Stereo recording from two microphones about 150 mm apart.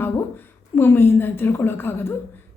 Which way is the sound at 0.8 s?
15° left (ahead or behind).